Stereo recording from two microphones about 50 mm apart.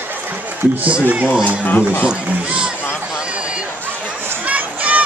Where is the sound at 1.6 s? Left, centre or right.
Left.